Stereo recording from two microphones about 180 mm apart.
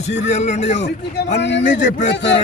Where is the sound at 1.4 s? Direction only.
80° left.